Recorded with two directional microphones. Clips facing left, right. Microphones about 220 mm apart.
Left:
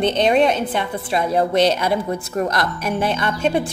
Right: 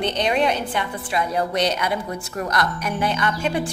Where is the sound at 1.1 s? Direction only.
25° left (ahead or behind).